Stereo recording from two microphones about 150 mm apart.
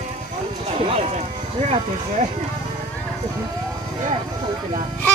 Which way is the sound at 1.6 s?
45° right (ahead or behind).